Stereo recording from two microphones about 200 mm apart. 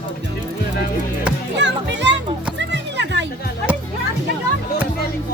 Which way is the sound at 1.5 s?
60° right (ahead or behind).